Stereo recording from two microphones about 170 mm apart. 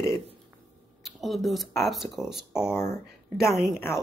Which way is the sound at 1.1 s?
Centre (ahead or behind).